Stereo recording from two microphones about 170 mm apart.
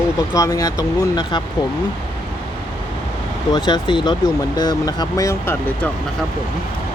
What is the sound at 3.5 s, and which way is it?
Speech, 25° left (ahead or behind).